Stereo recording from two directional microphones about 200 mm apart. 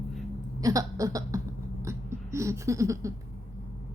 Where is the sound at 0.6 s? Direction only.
15° right (ahead or behind).